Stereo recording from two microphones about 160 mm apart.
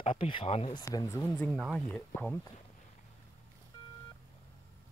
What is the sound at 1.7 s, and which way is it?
Speech, 10° left (ahead or behind).